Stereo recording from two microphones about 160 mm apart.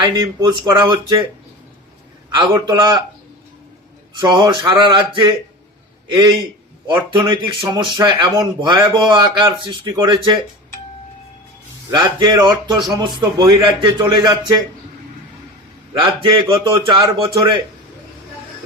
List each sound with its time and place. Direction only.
0.0 s a man's voice: 25° right (ahead or behind)
2.3 s a man's voice: 30° right (ahead or behind)
4.2 s a man's voice: 30° right (ahead or behind)
6.8 s a man's voice: 30° right (ahead or behind)
11.9 s a man's voice: 25° right (ahead or behind)
16.2 s a man's voice: 30° right (ahead or behind)